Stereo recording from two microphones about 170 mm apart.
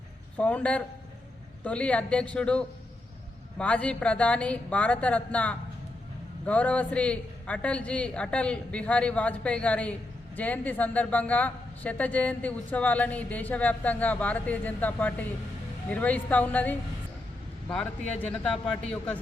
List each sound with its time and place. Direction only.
0.3 s a man's voice: 10° left (ahead or behind)